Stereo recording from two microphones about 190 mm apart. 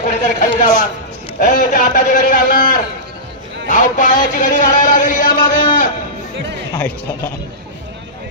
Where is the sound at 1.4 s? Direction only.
45° left (ahead or behind).